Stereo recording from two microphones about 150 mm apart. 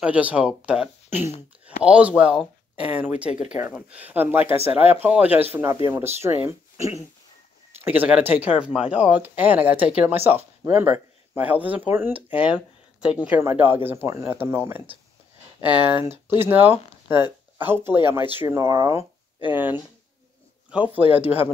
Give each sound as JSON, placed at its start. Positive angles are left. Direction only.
{"t": 0.0, "sound": "speech", "side_deg": -10}